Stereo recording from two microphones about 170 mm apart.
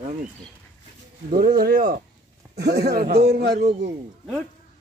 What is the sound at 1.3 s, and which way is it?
Speech, 60° right (ahead or behind).